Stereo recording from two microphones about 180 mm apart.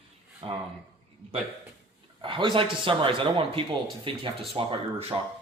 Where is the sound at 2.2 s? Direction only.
30° right (ahead or behind).